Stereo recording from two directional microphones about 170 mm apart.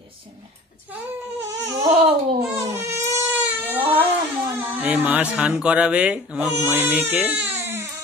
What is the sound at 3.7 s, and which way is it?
Cat, 30° right (ahead or behind).